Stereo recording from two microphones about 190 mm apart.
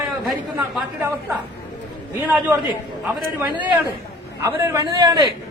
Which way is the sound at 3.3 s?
10° right (ahead or behind).